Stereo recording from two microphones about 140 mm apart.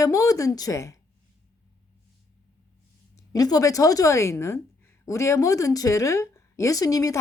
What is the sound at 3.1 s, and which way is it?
Speech, 25° left (ahead or behind).